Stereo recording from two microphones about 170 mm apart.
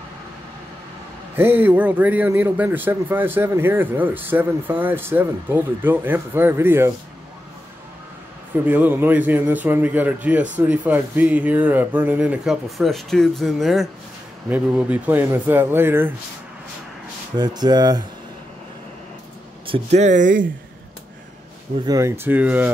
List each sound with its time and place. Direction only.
1.3 s a man's voice: 10° right (ahead or behind)
8.6 s a man's voice: 10° right (ahead or behind)
17.4 s speech: 25° right (ahead or behind)
19.6 s speech: 35° right (ahead or behind)
21.8 s a man's voice: 15° right (ahead or behind)